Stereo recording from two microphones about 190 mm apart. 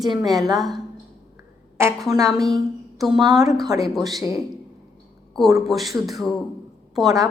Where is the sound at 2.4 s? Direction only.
Centre (ahead or behind).